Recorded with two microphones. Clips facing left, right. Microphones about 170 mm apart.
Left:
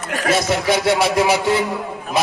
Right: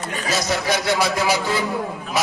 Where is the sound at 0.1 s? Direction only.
75° left (ahead or behind).